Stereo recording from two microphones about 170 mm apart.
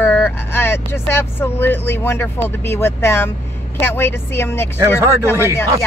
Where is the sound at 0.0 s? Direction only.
10° left (ahead or behind).